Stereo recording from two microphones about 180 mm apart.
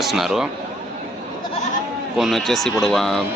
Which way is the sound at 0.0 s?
Centre (ahead or behind).